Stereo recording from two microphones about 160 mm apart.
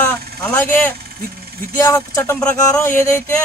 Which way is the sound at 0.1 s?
10° left (ahead or behind).